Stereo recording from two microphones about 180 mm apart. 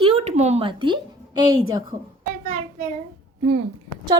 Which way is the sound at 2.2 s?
45° right (ahead or behind).